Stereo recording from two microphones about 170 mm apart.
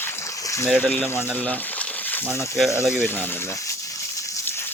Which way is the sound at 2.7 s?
15° left (ahead or behind).